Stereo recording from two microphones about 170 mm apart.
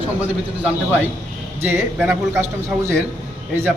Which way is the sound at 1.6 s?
15° right (ahead or behind).